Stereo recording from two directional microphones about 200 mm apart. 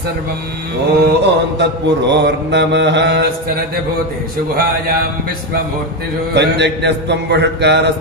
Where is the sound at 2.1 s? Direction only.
60° right (ahead or behind).